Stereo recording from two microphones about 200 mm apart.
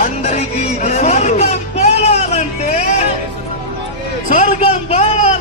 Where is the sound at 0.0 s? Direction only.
35° left (ahead or behind).